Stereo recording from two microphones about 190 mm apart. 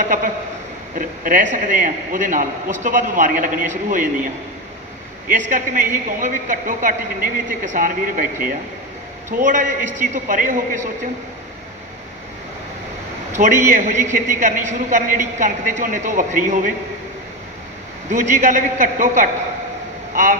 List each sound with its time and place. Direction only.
0.9 s a man's voice: 45° right (ahead or behind)
5.3 s a man's voice: 40° right (ahead or behind)
13.3 s a man's voice: 40° right (ahead or behind)
18.1 s a man's voice: 40° right (ahead or behind)